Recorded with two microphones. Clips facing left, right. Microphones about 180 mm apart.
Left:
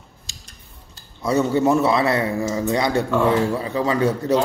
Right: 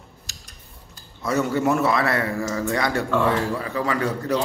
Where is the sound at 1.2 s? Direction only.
25° left (ahead or behind).